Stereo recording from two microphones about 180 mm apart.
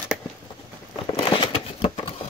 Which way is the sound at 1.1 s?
30° left (ahead or behind).